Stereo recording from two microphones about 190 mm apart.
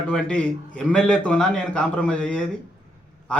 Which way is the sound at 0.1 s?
5° left (ahead or behind).